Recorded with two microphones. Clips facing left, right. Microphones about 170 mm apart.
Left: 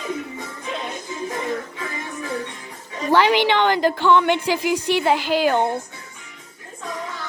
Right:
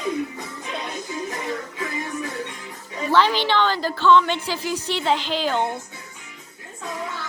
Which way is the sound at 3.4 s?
15° left (ahead or behind).